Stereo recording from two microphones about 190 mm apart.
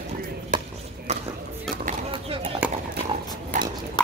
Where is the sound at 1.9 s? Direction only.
30° right (ahead or behind).